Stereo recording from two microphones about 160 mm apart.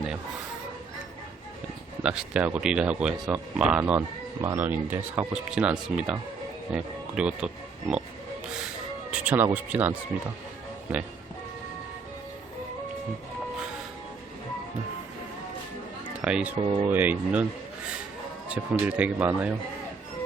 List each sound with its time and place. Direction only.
2.0 s speech: 5° right (ahead or behind)
9.0 s music: 5° right (ahead or behind)
9.3 s speech: 10° right (ahead or behind)
16.2 s speech: 5° right (ahead or behind)
16.6 s speech: 30° right (ahead or behind)
16.9 s speech: 10° right (ahead or behind)
18.4 s speech: 10° right (ahead or behind)